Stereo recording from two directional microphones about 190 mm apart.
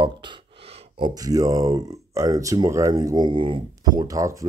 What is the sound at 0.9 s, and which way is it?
Speech, 20° right (ahead or behind).